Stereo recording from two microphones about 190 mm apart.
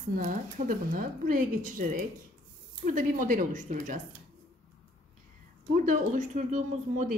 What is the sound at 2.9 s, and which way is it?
Speech, 40° right (ahead or behind).